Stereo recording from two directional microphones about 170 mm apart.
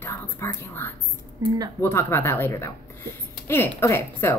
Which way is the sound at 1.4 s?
20° right (ahead or behind).